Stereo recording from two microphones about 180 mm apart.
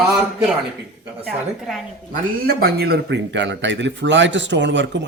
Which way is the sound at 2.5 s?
60° right (ahead or behind).